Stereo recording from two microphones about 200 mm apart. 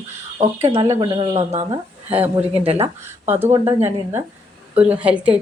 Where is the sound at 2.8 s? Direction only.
10° right (ahead or behind).